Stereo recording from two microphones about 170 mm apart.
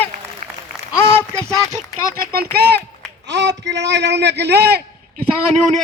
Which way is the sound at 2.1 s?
60° right (ahead or behind).